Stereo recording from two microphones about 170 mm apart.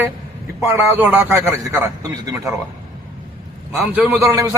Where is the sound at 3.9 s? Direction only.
10° right (ahead or behind).